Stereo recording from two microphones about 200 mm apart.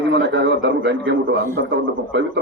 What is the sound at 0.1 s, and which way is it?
A man's voice, 60° right (ahead or behind).